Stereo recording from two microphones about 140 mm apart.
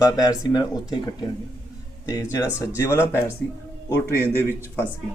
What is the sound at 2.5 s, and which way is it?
A man's voice, 20° left (ahead or behind).